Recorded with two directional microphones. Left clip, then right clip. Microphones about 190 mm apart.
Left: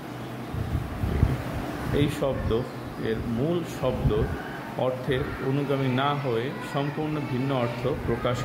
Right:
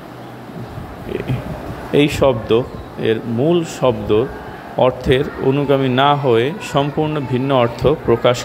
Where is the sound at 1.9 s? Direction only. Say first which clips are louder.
Right 13 dB; 35° right (ahead or behind).